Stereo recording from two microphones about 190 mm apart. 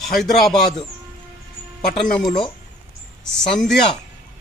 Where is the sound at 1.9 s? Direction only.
45° left (ahead or behind).